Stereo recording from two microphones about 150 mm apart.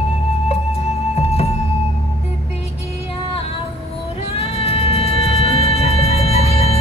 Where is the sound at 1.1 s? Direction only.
45° left (ahead or behind).